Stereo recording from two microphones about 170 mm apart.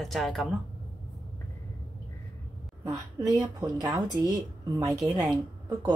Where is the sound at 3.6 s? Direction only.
25° right (ahead or behind).